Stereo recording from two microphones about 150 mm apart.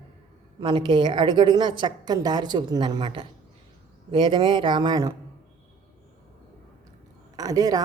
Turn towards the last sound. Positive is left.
turn(degrees=-25)  # may be behind; listen again after turning